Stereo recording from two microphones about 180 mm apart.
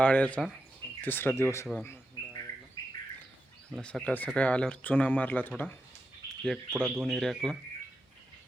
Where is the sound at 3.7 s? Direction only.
5° left (ahead or behind).